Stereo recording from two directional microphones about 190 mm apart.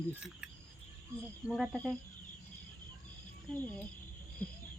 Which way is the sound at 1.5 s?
Centre (ahead or behind).